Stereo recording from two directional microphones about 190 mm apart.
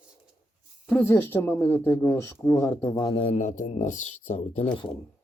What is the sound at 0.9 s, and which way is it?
Speech, 10° left (ahead or behind).